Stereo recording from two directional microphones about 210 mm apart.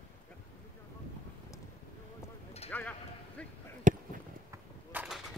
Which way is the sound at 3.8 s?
40° right (ahead or behind).